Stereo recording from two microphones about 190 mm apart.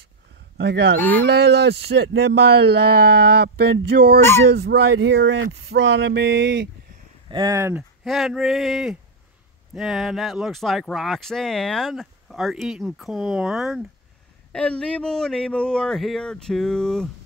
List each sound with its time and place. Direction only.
0.6 s speech: 60° right (ahead or behind)
7.2 s speech: 25° right (ahead or behind)
7.5 s speech: 10° right (ahead or behind)